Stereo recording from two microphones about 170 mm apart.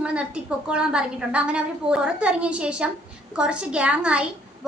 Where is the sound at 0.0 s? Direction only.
5° right (ahead or behind).